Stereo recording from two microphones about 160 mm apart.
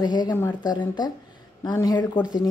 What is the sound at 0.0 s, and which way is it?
A child's voice, 25° left (ahead or behind).